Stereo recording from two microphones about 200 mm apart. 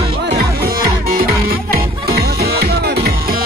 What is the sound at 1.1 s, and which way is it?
Music, 50° right (ahead or behind).